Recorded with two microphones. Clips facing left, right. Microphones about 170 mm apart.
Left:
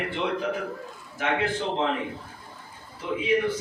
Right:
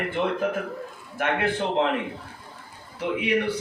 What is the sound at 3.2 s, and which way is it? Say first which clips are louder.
Speech: left 1 dB; 70° right (ahead or behind).